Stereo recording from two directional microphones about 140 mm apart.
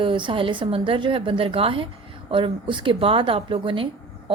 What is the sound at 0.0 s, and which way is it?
A woman's voice, 35° right (ahead or behind).